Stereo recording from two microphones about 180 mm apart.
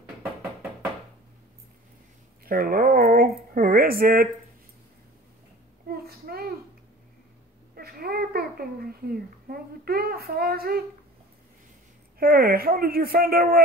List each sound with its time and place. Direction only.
2.4 s speech: 55° right (ahead or behind)
5.9 s a sound: 55° right (ahead or behind)
7.7 s a child's voice: 60° right (ahead or behind)
12.2 s speech: 55° right (ahead or behind)